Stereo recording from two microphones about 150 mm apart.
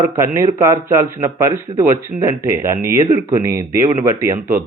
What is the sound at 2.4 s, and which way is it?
A man's voice, 20° right (ahead or behind).